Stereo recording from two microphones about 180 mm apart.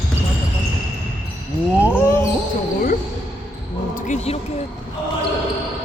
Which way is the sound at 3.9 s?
40° left (ahead or behind).